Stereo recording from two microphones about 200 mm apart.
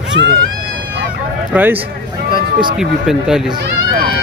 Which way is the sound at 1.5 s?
10° right (ahead or behind).